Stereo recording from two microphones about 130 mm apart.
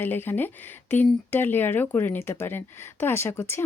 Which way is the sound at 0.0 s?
15° left (ahead or behind).